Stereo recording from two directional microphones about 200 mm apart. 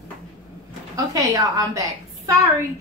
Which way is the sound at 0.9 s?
15° right (ahead or behind).